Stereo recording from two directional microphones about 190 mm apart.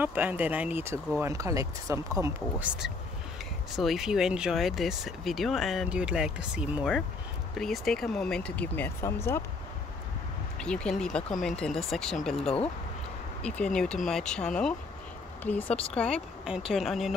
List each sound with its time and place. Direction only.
0.0 s speech: 10° right (ahead or behind)
2.7 s speech: 5° right (ahead or behind); by 9.4 s 15° left (ahead or behind)
10.6 s speech: 5° left (ahead or behind)
12.4 s speech: 30° left (ahead or behind)
13.4 s speech: 5° left (ahead or behind)